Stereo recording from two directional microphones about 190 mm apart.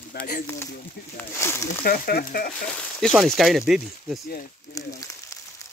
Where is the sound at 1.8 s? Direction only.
50° left (ahead or behind).